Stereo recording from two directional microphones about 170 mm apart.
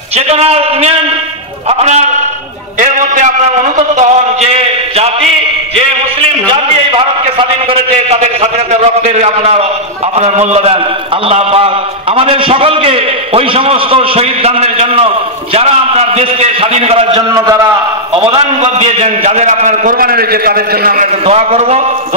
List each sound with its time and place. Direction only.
0.1 s a man's voice: 40° right (ahead or behind)
3.7 s a man's voice: 40° right (ahead or behind)
4.9 s a sound: 35° right (ahead or behind)
6.2 s a man's voice: 30° right (ahead or behind)
17.3 s a man's voice: 20° right (ahead or behind)
18.1 s a man's voice: 35° right (ahead or behind); by 21.1 s 60° right (ahead or behind)
21.3 s a man's voice: 40° right (ahead or behind)